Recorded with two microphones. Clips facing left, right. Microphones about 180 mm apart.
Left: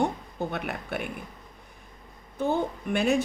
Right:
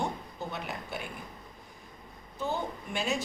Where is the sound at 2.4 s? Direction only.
55° left (ahead or behind).